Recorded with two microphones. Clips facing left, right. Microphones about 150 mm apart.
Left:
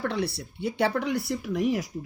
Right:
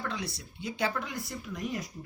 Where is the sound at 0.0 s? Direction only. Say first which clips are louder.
Left 8 dB; 65° left (ahead or behind).